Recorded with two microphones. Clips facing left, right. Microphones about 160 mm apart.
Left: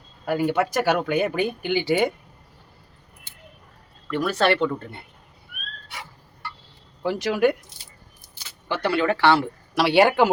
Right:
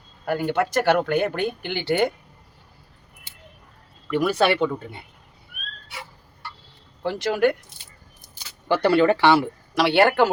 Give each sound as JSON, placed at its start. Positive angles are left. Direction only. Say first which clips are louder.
{"t": 0.3, "sound": "speech", "louder": "left 1 dB", "side_deg": 5}
{"t": 4.1, "sound": "speech", "louder": "right 1 dB", "side_deg": -10}
{"t": 7.0, "sound": "speech", "louder": "even", "side_deg": 5}
{"t": 8.6, "sound": "speech", "louder": "right 5 dB", "side_deg": -35}
{"t": 9.1, "sound": "speech", "louder": "right 1 dB", "side_deg": -15}
{"t": 9.7, "sound": "speech", "louder": "even", "side_deg": 10}